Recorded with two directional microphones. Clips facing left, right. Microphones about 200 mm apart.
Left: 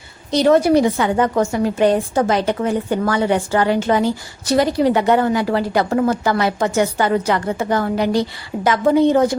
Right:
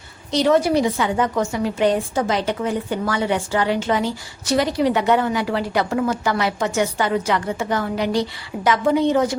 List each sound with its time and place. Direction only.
0.3 s a woman's voice: 45° left (ahead or behind)